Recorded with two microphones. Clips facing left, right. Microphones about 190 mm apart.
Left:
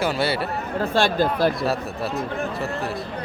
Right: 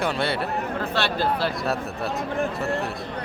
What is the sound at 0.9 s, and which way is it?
Speech, 45° left (ahead or behind).